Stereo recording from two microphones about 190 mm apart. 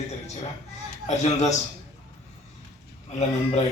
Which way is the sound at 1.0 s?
35° left (ahead or behind).